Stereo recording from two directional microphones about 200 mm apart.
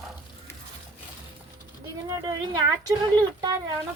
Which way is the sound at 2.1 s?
20° right (ahead or behind).